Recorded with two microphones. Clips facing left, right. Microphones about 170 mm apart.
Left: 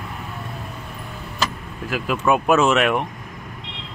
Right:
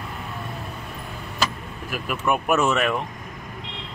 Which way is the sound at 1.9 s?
90° left.